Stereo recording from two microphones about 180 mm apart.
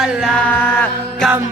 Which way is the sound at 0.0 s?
Centre (ahead or behind).